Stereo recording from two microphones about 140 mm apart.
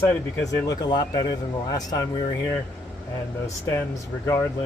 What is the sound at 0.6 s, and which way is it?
A man's voice, 30° left (ahead or behind).